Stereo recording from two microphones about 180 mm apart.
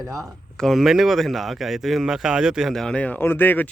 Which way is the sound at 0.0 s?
20° right (ahead or behind).